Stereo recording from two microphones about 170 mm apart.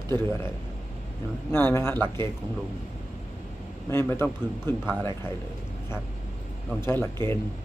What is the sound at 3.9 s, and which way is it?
A man's voice, 15° left (ahead or behind).